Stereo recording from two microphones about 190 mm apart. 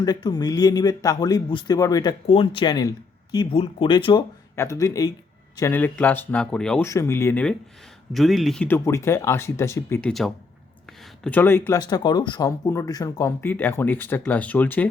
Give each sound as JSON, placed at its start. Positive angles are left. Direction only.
{"t": 0.0, "sound": "a man's voice", "side_deg": 20}
{"t": 6.8, "sound": "speech", "side_deg": 15}
{"t": 10.1, "sound": "speech", "side_deg": 0}